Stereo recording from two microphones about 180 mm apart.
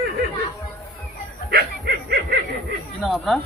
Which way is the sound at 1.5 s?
65° right (ahead or behind).